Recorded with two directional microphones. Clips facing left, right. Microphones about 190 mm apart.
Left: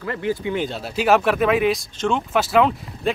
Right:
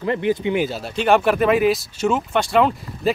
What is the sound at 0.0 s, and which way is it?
Speech, 20° right (ahead or behind).